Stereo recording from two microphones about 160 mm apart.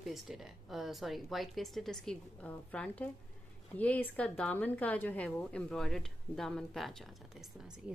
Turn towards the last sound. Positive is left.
turn(degrees=-5)  # may be behind; listen again after turning